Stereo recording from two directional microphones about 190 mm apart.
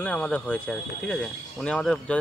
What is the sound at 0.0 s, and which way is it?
Speech, 5° left (ahead or behind).